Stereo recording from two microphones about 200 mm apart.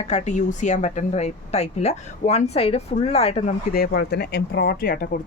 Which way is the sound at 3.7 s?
50° left (ahead or behind).